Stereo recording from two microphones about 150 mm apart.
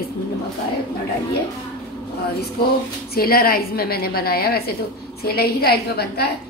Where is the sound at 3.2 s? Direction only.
85° left.